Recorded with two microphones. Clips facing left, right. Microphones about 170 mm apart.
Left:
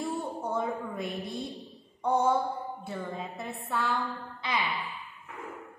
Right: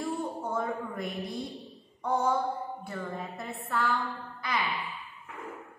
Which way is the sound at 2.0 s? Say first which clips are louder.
Left 3 dB; 20° left (ahead or behind).